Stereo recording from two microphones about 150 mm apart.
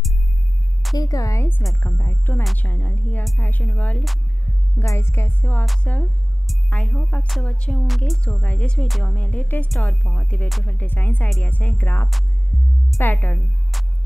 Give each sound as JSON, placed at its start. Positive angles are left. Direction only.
{"t": 0.9, "sound": "speech", "side_deg": 25}
{"t": 4.7, "sound": "speech", "side_deg": 20}
{"t": 9.7, "sound": "music", "side_deg": 5}
{"t": 10.8, "sound": "speech", "side_deg": 10}